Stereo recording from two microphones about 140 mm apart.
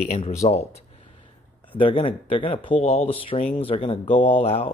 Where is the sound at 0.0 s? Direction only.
50° left (ahead or behind).